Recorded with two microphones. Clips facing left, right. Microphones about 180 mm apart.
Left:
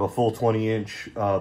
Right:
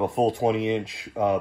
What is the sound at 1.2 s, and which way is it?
Speech, 30° right (ahead or behind).